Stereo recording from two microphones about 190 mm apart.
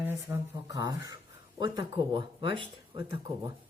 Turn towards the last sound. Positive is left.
turn(degrees=-20)  # may be behind; listen again after turning